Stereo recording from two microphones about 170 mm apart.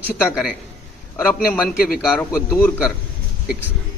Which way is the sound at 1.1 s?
10° left (ahead or behind).